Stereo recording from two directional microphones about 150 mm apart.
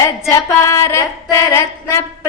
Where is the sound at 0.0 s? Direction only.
20° left (ahead or behind).